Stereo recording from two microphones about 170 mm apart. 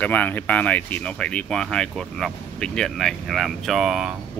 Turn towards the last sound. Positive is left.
turn(degrees=-5)  # may be behind; listen again after turning